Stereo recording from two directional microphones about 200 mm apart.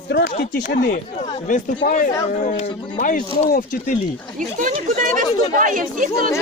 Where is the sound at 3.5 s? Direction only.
45° left (ahead or behind).